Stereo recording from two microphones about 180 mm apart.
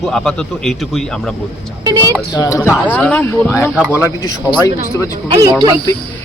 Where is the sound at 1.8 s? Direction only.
20° right (ahead or behind).